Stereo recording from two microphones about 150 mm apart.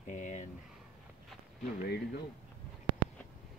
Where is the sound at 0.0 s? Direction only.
55° left (ahead or behind).